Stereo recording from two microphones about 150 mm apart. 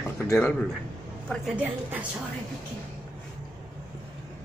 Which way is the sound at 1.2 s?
5° right (ahead or behind).